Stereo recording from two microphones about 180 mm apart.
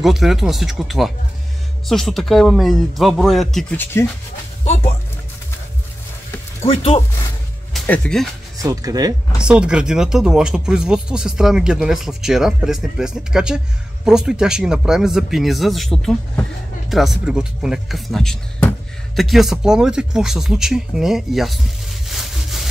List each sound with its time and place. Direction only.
0.0 s speech: centre (ahead or behind)
3.7 s speech: 10° left (ahead or behind)
6.6 s speech: 35° left (ahead or behind)
7.7 s speech: 5° left (ahead or behind)
8.6 s speech: 20° right (ahead or behind)
9.4 s speech: 5° right (ahead or behind)